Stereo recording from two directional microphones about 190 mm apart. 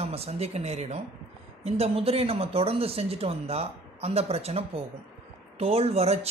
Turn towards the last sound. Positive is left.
turn(degrees=-35)  # may be behind; listen again after turning